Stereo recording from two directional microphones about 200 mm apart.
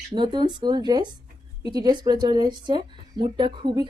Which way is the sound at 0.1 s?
20° right (ahead or behind).